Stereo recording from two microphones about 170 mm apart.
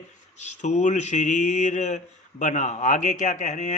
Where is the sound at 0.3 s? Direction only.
45° left (ahead or behind).